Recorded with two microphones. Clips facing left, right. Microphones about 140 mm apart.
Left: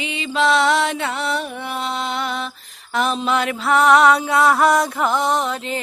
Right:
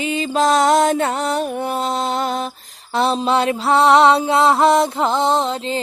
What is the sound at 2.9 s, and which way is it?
Mantra, 35° right (ahead or behind).